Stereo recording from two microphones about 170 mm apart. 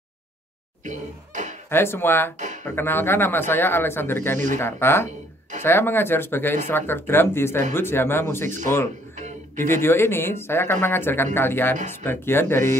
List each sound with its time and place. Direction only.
0.8 s cough: 45° right (ahead or behind)
1.7 s speech: 15° left (ahead or behind)
2.3 s a sound: 45° right (ahead or behind)
2.6 s speech: 15° left (ahead or behind)
9.6 s speech: 15° left (ahead or behind)